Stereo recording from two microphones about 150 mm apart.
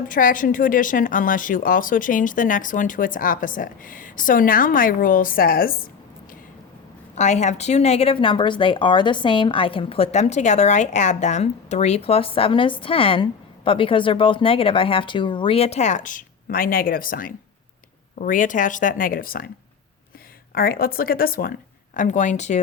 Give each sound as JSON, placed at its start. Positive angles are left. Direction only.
{"t": 0.1, "sound": "speech", "side_deg": 65}
{"t": 7.2, "sound": "a woman's voice", "side_deg": 50}
{"t": 20.5, "sound": "speech", "side_deg": 80}